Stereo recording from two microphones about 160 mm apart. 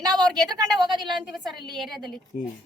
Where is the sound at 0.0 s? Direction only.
20° right (ahead or behind).